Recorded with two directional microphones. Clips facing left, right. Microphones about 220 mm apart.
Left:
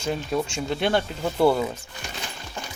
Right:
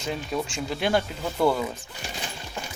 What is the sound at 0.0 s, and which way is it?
Speech, centre (ahead or behind).